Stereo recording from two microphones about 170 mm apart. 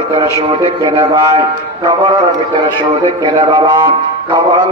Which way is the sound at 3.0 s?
25° right (ahead or behind).